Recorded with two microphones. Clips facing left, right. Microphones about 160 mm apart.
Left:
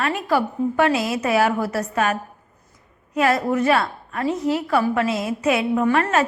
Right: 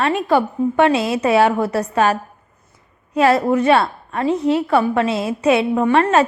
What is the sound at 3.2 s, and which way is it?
A woman's voice, 30° right (ahead or behind).